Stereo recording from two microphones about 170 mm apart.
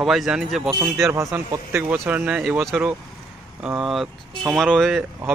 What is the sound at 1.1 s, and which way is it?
Speech, 15° right (ahead or behind).